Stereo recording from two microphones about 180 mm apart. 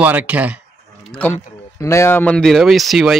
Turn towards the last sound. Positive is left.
turn(degrees=0)  # may be behind; listen again after turning